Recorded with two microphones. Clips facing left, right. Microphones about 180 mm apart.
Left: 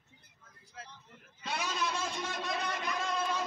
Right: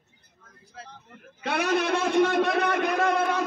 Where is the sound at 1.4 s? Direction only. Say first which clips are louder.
Right 11 dB; 65° right (ahead or behind).